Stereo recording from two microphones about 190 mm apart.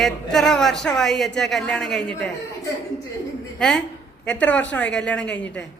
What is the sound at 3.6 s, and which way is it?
A woman's voice, 5° left (ahead or behind).